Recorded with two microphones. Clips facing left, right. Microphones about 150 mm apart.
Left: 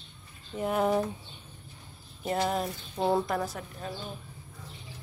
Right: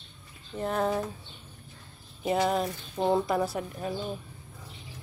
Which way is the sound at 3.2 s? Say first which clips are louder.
Right 4 dB; 10° right (ahead or behind).